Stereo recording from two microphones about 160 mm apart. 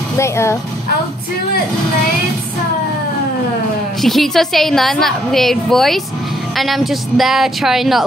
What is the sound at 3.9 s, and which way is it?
A woman's voice, centre (ahead or behind).